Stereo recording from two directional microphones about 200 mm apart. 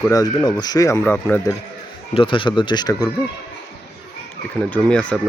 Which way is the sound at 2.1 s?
25° left (ahead or behind).